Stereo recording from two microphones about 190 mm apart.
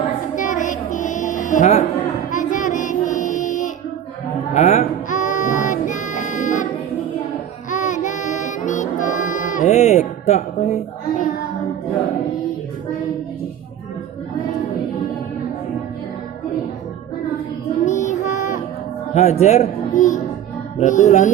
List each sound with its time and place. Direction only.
0.3 s music: 40° left (ahead or behind)
2.3 s child singing: 40° left (ahead or behind)
4.5 s music: 35° left (ahead or behind)
7.7 s child singing: 40° left (ahead or behind)
17.8 s child singing: 40° left (ahead or behind)
19.1 s music: 35° left (ahead or behind)
20.7 s speech: 40° left (ahead or behind)